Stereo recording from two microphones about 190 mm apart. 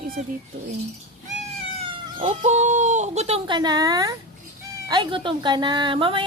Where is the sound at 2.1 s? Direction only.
35° right (ahead or behind).